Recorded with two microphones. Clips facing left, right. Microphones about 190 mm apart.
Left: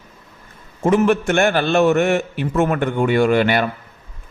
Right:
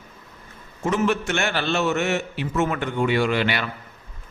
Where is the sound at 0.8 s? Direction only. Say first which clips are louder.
Left 7 dB; 55° left (ahead or behind).